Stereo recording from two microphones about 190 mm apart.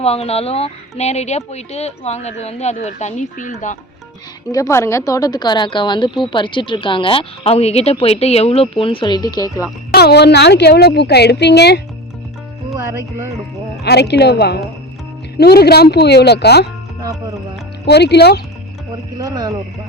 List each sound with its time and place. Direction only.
0.0 s speech: 30° left (ahead or behind)
4.5 s speech: 15° left (ahead or behind)
9.9 s speech: 60° left (ahead or behind)
13.8 s speech: 60° left (ahead or behind)
17.0 s music: 20° right (ahead or behind)
17.8 s speech: 60° left (ahead or behind)
19.1 s speech: 20° right (ahead or behind)